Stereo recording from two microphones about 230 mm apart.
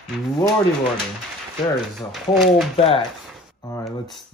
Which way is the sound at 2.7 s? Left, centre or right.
Left.